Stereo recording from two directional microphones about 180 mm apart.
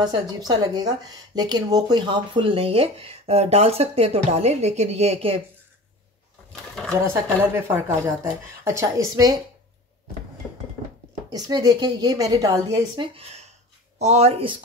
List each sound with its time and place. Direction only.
0.0 s speech: 20° right (ahead or behind)
6.7 s a sound: 5° left (ahead or behind)
7.5 s a woman's voice: 15° right (ahead or behind)
11.2 s a woman's voice: 20° right (ahead or behind)